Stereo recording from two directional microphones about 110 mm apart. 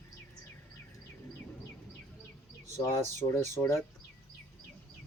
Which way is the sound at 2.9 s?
25° left (ahead or behind).